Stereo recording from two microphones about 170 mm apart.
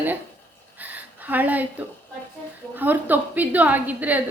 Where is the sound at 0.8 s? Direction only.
10° right (ahead or behind).